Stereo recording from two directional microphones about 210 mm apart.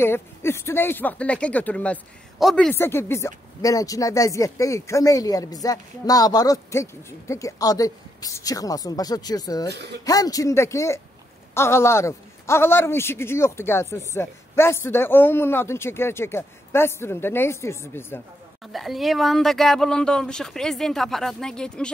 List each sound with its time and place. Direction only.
0.0 s speech: 10° left (ahead or behind)
9.7 s speech: 55° right (ahead or behind)
10.0 s speech: 15° left (ahead or behind)
18.7 s speech: centre (ahead or behind)